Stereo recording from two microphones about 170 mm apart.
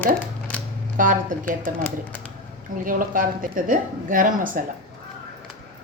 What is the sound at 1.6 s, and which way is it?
Speech, 10° left (ahead or behind).